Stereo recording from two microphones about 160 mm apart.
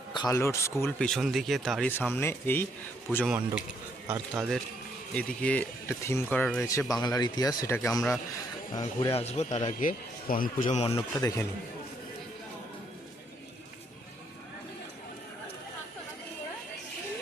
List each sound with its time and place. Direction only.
0.1 s a sound: 30° left (ahead or behind)
0.3 s speech: 15° left (ahead or behind)
0.9 s speech: 5° left (ahead or behind)
3.2 s speech: 10° right (ahead or behind); by 6.7 s 10° left (ahead or behind)
6.9 s speech: 25° left (ahead or behind)
9.1 s speech: 45° left (ahead or behind)
10.8 s speech: 20° left (ahead or behind)